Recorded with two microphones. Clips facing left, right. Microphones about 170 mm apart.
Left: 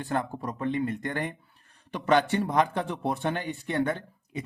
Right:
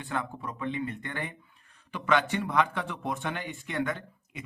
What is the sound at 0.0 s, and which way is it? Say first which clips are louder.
A man's voice: left 4 dB; 40° left (ahead or behind).